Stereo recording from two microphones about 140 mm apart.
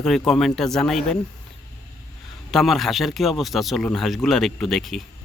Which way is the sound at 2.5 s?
Centre (ahead or behind).